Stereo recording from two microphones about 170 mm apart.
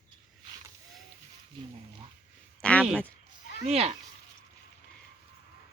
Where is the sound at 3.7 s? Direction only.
40° right (ahead or behind).